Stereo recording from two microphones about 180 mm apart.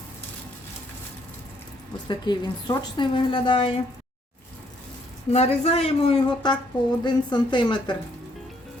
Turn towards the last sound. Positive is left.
turn(degrees=25)  # may be behind; listen again after turning